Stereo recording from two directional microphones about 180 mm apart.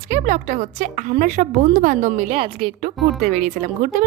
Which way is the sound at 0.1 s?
45° right (ahead or behind).